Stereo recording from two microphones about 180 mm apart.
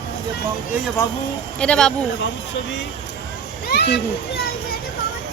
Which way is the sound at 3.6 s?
65° left (ahead or behind).